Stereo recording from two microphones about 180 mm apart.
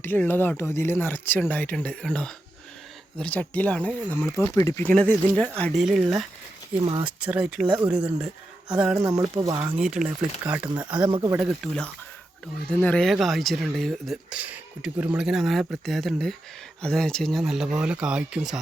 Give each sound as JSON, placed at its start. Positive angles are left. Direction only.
{"t": 0.0, "sound": "speech", "side_deg": 10}
{"t": 6.7, "sound": "speech", "side_deg": -30}
{"t": 7.2, "sound": "speech", "side_deg": -10}
{"t": 9.0, "sound": "speech", "side_deg": -20}
{"t": 9.7, "sound": "speech", "side_deg": -5}
{"t": 10.8, "sound": "speech", "side_deg": -25}
{"t": 11.3, "sound": "speech", "side_deg": 0}